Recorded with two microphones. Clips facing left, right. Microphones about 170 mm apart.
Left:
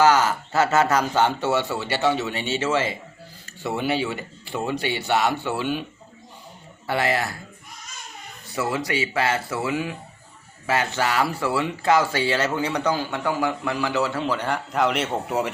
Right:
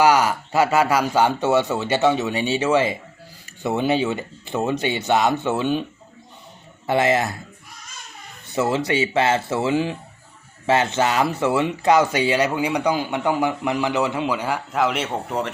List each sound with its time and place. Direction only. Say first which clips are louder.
0.0 s speech: right 1 dB; 15° right (ahead or behind)
6.8 s speech: right 5 dB; 20° right (ahead or behind)
8.4 s speech: right 5 dB; 25° right (ahead or behind); by 15.4 s 5° left (ahead or behind)